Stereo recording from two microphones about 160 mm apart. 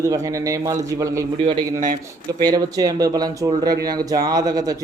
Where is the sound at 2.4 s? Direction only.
25° right (ahead or behind).